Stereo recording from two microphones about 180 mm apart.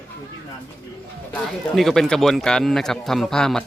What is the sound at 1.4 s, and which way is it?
Speech, centre (ahead or behind).